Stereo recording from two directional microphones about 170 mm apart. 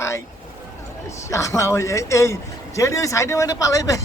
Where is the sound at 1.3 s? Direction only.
15° left (ahead or behind).